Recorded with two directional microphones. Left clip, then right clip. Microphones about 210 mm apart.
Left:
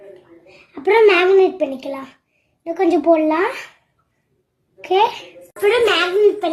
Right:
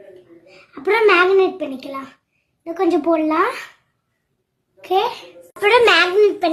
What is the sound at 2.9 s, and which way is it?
Speech, centre (ahead or behind).